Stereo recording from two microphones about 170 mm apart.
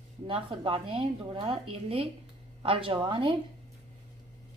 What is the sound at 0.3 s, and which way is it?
Speech, 35° right (ahead or behind).